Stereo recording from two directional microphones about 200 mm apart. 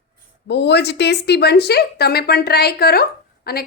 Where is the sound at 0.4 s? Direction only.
60° left (ahead or behind).